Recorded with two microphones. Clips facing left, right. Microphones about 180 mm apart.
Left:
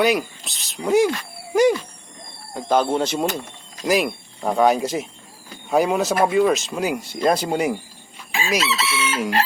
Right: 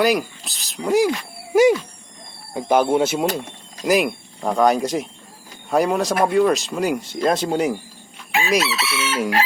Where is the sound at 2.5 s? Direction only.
10° right (ahead or behind); by 7.8 s 10° left (ahead or behind).